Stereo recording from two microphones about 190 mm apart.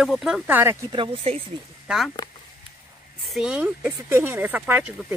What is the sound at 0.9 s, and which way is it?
Speech, 30° right (ahead or behind).